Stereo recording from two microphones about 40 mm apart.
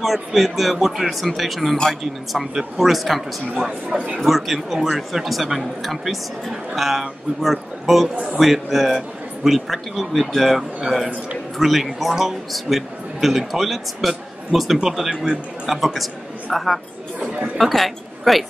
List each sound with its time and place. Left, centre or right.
0.0 s a man's voice: centre
3.9 s a man's voice: right
4.2 s a man's voice: centre